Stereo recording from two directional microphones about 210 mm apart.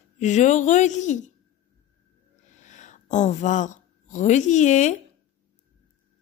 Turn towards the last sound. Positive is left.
turn(degrees=35)  # may be behind; listen again after turning